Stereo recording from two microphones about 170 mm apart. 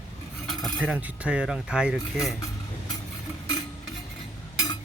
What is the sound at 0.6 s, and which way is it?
Cutlery, centre (ahead or behind).